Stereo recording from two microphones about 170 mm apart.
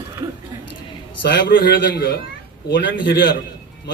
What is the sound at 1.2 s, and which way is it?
Speech, 90° left.